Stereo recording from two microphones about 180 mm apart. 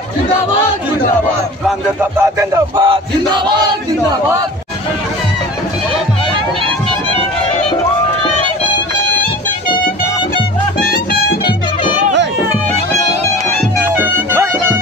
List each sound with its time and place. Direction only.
2.0 s music: 15° right (ahead or behind)
2.8 s battle cry: 25° right (ahead or behind)
13.9 s music: 15° right (ahead or behind)